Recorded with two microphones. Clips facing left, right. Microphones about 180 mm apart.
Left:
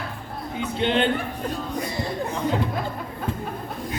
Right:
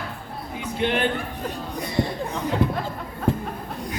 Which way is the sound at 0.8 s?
25° left (ahead or behind).